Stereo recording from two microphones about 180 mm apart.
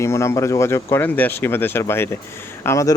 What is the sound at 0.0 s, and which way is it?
A man's voice, 15° left (ahead or behind).